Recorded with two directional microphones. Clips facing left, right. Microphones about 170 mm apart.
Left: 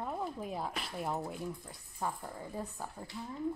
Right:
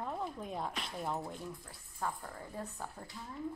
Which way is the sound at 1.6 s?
15° left (ahead or behind).